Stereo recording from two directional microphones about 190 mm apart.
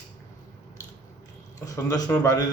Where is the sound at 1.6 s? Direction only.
20° left (ahead or behind).